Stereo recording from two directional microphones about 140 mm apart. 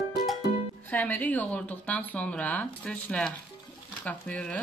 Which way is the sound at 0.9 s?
10° left (ahead or behind).